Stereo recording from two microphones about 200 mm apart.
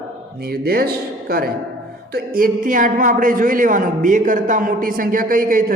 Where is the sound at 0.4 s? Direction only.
50° right (ahead or behind).